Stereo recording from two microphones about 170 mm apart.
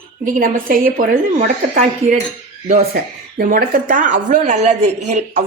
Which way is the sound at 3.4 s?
55° right (ahead or behind).